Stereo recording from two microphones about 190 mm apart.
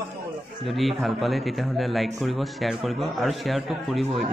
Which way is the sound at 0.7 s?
Centre (ahead or behind).